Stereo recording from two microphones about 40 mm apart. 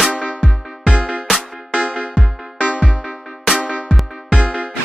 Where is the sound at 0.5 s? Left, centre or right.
Centre.